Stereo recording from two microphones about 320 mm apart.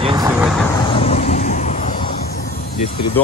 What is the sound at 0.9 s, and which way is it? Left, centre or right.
Vehicle, centre.